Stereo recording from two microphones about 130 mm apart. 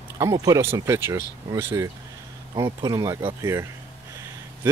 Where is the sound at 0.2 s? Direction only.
25° right (ahead or behind).